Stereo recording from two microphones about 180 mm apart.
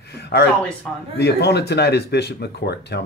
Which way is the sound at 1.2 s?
65° left (ahead or behind).